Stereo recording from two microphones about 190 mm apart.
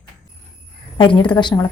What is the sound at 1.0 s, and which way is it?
Speech, 25° left (ahead or behind).